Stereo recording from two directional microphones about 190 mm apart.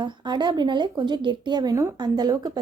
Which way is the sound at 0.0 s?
25° right (ahead or behind).